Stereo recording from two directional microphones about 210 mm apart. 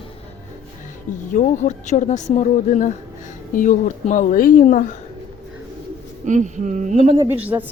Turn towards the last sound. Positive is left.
turn(degrees=-10)  # may be behind; listen again after turning